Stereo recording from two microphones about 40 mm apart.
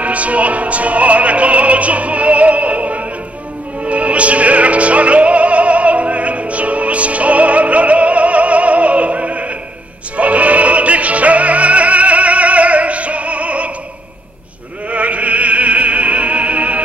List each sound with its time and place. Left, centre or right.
0.0 s opera: right
3.8 s music: right
14.9 s opera: right